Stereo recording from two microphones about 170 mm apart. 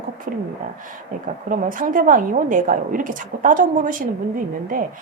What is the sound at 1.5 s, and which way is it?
A woman's voice, 55° right (ahead or behind).